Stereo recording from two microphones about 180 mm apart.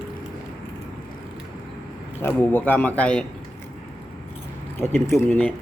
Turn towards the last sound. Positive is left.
turn(degrees=10)  # may be behind; listen again after turning